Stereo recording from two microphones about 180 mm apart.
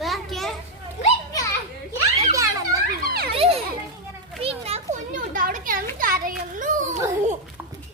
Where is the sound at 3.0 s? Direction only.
60° right (ahead or behind).